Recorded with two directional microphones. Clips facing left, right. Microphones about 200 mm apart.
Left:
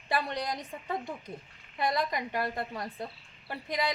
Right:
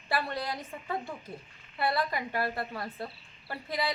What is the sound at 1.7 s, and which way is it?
A woman's voice, 15° left (ahead or behind).